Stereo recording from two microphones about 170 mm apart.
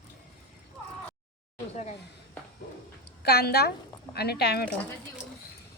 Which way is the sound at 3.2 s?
70° left (ahead or behind).